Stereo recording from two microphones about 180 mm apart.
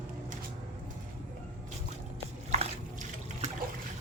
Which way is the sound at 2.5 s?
40° right (ahead or behind).